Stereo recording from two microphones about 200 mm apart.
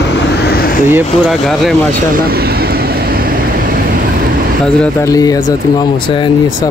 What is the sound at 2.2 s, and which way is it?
Vehicle, 50° right (ahead or behind).